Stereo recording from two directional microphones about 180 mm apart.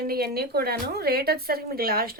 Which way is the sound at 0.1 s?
60° right (ahead or behind).